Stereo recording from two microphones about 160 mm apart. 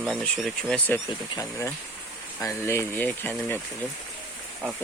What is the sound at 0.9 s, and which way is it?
Speech, 15° left (ahead or behind).